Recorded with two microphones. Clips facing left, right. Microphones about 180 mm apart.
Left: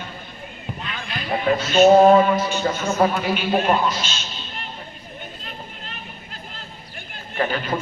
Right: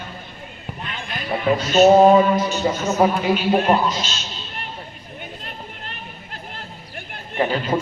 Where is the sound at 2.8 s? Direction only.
20° right (ahead or behind).